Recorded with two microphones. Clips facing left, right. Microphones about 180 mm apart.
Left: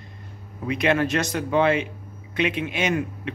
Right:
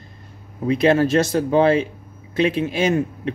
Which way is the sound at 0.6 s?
30° right (ahead or behind).